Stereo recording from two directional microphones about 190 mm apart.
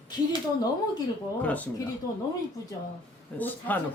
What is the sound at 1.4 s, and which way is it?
Speech, 10° left (ahead or behind).